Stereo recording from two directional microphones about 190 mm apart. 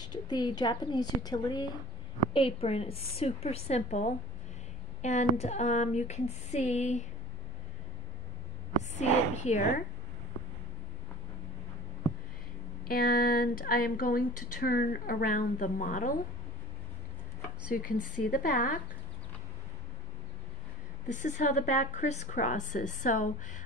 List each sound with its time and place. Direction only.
0.0 s a woman's voice: 20° left (ahead or behind); by 7.1 s 35° left (ahead or behind)
8.9 s a woman's voice: 35° left (ahead or behind)
12.8 s speech: 50° left (ahead or behind)
17.8 s speech: 45° left (ahead or behind)
21.1 s a woman's voice: 40° left (ahead or behind)